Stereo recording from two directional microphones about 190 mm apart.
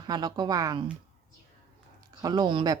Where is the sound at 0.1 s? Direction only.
20° right (ahead or behind).